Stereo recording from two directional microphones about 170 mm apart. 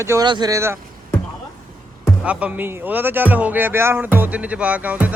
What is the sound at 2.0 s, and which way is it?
Speech, 5° right (ahead or behind).